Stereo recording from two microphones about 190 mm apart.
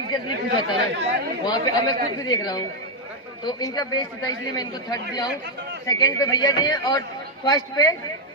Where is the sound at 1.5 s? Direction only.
20° left (ahead or behind).